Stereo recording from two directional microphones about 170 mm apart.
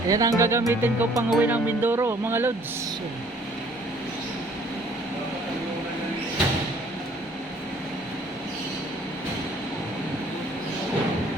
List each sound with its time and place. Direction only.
0.1 s speech: 20° right (ahead or behind)